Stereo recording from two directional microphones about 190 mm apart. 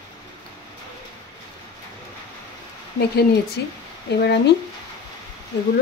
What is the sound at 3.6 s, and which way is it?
Speech, 65° left (ahead or behind).